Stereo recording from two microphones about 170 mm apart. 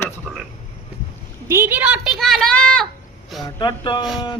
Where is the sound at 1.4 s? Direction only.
15° right (ahead or behind); by 2.8 s 5° left (ahead or behind).